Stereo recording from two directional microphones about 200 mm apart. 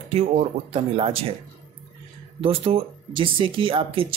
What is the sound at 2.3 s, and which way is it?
Speech, 30° right (ahead or behind).